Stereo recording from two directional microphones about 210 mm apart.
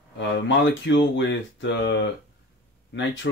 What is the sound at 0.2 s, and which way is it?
Speech, 60° left (ahead or behind).